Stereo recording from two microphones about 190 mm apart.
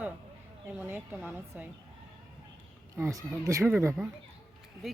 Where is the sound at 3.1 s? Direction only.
15° right (ahead or behind).